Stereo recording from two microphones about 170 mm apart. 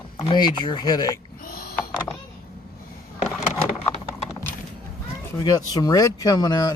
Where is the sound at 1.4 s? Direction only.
60° left (ahead or behind).